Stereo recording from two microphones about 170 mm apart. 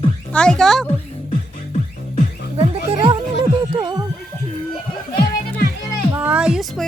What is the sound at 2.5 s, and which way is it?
Speech, 30° right (ahead or behind).